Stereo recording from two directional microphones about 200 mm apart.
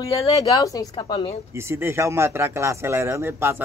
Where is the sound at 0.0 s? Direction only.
15° left (ahead or behind).